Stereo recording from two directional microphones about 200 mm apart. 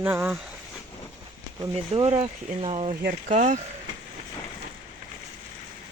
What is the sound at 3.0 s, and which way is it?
Speech, 40° right (ahead or behind).